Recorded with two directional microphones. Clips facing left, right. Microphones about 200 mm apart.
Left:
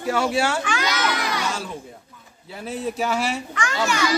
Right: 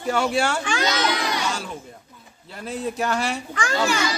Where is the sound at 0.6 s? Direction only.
30° right (ahead or behind).